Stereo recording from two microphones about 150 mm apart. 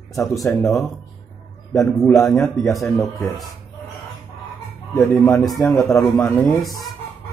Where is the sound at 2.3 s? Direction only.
Centre (ahead or behind).